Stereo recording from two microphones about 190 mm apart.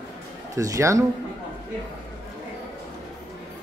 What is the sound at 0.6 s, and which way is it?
Speech, 15° right (ahead or behind).